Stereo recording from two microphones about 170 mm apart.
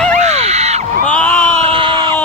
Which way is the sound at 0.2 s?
40° right (ahead or behind).